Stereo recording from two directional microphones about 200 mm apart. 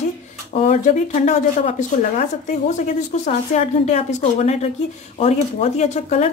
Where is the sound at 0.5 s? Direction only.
35° left (ahead or behind).